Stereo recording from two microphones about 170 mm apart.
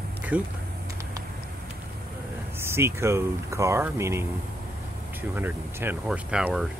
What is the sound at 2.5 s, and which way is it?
Speech, 15° right (ahead or behind).